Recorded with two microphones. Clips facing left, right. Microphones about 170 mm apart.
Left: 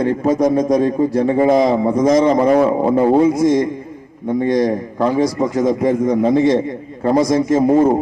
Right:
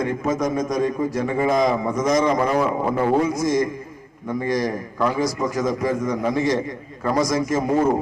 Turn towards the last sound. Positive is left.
turn(degrees=30)  # may be behind; listen again after turning